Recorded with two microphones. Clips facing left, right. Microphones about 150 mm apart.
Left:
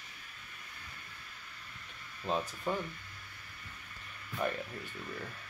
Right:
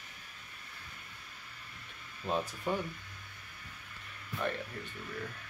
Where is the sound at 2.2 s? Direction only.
Centre (ahead or behind).